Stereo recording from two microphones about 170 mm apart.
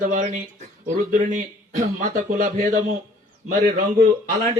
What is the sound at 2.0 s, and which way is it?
Speech, 50° right (ahead or behind).